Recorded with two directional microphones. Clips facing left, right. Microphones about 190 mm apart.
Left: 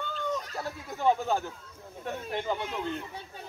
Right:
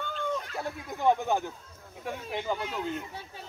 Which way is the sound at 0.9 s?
15° right (ahead or behind).